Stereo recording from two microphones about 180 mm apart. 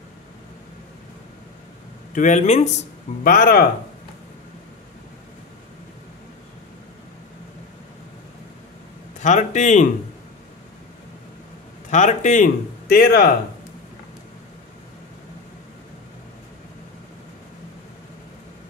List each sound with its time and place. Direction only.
2.1 s speech: 40° left (ahead or behind)
3.3 s a man's voice: 55° left (ahead or behind)
9.2 s a man's voice: 40° left (ahead or behind)
11.9 s a man's voice: 45° left (ahead or behind)
12.8 s speech: 60° left (ahead or behind)